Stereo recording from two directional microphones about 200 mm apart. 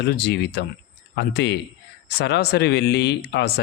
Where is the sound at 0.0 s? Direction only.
55° left (ahead or behind).